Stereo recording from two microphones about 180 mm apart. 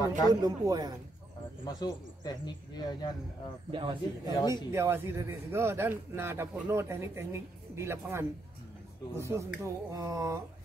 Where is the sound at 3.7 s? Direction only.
25° right (ahead or behind).